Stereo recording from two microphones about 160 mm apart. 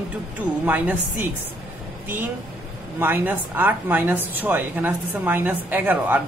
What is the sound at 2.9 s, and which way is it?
A woman's voice, 10° right (ahead or behind).